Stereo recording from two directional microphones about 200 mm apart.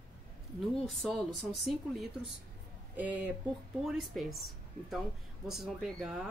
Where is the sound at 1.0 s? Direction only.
Centre (ahead or behind).